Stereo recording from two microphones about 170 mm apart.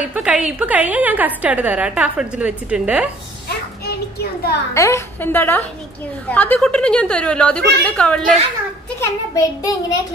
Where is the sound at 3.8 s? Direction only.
70° left (ahead or behind).